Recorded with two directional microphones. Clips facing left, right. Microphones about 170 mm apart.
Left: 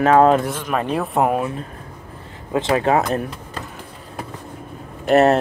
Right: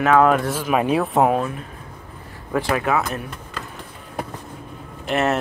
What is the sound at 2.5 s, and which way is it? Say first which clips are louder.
Speech: left 3 dB; 25° left (ahead or behind).